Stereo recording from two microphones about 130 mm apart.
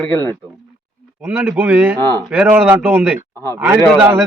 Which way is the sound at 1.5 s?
10° right (ahead or behind).